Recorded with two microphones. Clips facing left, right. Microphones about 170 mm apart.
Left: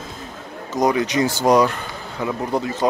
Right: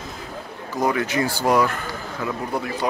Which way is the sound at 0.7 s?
20° left (ahead or behind).